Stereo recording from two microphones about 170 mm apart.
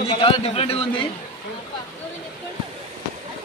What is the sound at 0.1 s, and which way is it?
Speech, 35° left (ahead or behind).